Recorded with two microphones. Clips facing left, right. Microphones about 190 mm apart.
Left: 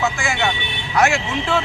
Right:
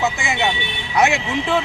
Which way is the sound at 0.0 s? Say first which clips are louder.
Even; 20° right (ahead or behind).